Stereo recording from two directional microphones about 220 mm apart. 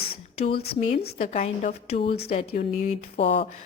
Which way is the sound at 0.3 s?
30° left (ahead or behind).